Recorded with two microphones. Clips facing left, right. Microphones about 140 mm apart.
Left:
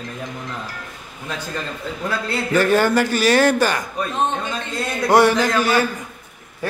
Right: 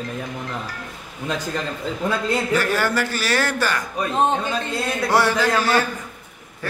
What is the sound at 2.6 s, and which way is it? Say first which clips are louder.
A man's voice: left 5 dB; 20° left (ahead or behind).